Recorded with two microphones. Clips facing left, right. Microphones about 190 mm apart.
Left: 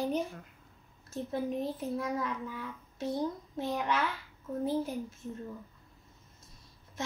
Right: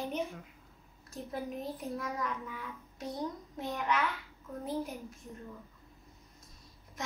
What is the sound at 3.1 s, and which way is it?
Speech, centre (ahead or behind).